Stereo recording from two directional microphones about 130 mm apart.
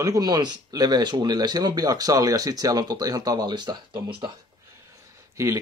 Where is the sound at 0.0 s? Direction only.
30° right (ahead or behind).